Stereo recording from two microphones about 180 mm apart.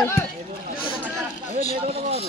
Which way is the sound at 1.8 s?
35° right (ahead or behind).